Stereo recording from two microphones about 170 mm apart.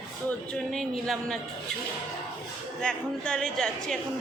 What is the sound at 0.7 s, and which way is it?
Speech, centre (ahead or behind).